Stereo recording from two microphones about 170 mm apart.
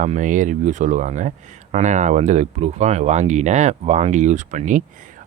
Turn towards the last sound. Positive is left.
turn(degrees=-50)  # may be behind; listen again after turning